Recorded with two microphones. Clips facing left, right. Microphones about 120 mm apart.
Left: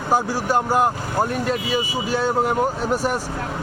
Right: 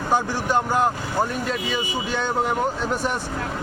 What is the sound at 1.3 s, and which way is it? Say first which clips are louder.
Speech: left 4 dB; 45° left (ahead or behind).